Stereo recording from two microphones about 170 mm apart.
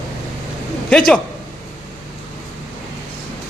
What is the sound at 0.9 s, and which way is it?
Speech, 5° left (ahead or behind).